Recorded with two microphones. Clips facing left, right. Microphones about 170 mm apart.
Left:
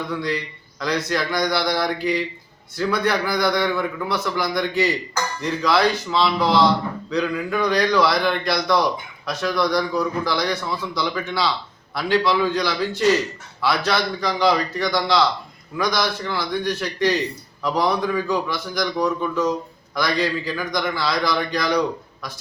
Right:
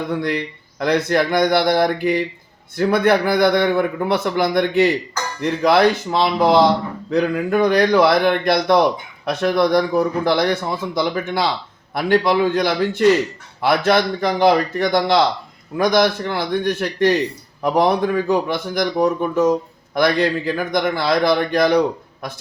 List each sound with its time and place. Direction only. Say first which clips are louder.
0.1 s a man's voice: right 4 dB; 55° right (ahead or behind)